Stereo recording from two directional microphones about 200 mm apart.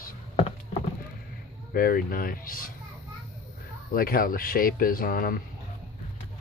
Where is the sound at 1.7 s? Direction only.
45° left (ahead or behind).